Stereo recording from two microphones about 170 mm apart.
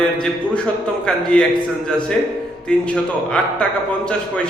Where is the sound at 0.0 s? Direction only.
5° left (ahead or behind).